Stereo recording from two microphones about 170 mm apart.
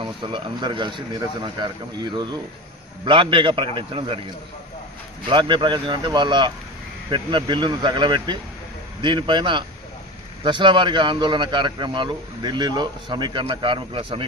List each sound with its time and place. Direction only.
0.0 s a man's voice: 30° right (ahead or behind)
5.3 s a man's voice: 30° right (ahead or behind)